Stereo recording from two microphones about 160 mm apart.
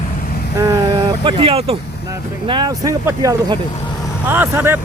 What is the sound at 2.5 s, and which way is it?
Speech, 25° right (ahead or behind).